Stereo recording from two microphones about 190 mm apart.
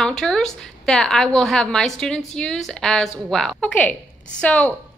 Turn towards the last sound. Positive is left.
turn(degrees=5)  # may be behind; listen again after turning